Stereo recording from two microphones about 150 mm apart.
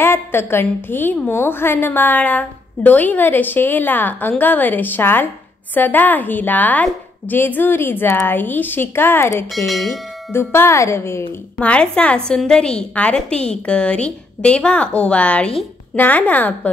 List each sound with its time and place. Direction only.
0.0 s a woman's voice: 15° left (ahead or behind)
11.5 s a woman's voice: 5° left (ahead or behind)